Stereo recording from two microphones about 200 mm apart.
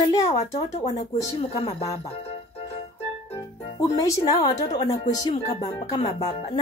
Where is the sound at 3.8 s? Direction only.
20° left (ahead or behind).